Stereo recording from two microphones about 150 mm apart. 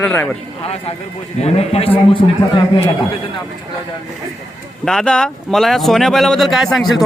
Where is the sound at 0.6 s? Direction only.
45° left (ahead or behind).